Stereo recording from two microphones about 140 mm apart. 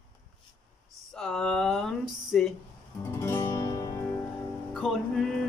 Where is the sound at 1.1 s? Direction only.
5° left (ahead or behind).